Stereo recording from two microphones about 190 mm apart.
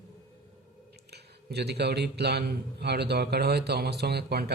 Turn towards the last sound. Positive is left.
turn(degrees=-60)  # may be behind; listen again after turning